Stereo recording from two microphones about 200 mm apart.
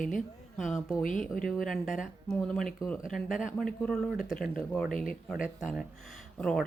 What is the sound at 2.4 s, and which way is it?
Speech, 5° left (ahead or behind).